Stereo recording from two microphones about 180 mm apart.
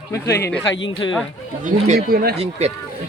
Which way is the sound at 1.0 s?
25° left (ahead or behind).